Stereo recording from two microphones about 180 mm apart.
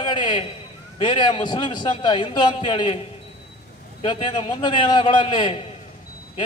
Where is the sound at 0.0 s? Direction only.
25° left (ahead or behind).